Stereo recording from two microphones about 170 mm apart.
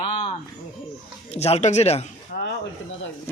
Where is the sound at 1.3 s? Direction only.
35° left (ahead or behind).